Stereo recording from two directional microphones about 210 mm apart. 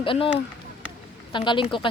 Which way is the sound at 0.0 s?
25° left (ahead or behind).